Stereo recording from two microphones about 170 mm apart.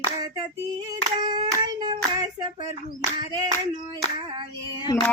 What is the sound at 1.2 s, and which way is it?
Hands, 25° right (ahead or behind).